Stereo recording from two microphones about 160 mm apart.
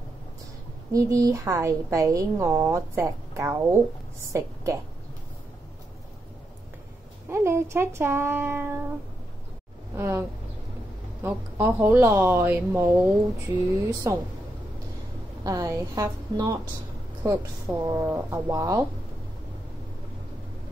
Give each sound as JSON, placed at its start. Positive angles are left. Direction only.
{"t": 0.9, "sound": "a woman's voice", "side_deg": -20}
{"t": 7.2, "sound": "speech", "side_deg": -15}
{"t": 9.9, "sound": "speech", "side_deg": -15}
{"t": 11.2, "sound": "a woman's voice", "side_deg": -10}
{"t": 15.4, "sound": "a woman's voice", "side_deg": -25}